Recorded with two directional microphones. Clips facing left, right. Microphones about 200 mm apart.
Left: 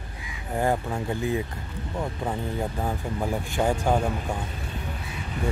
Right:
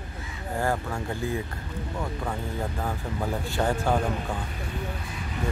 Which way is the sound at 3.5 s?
15° left (ahead or behind).